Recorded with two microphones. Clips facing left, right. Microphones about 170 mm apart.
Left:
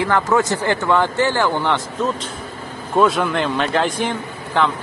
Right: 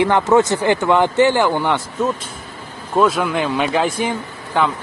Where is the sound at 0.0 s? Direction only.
20° right (ahead or behind).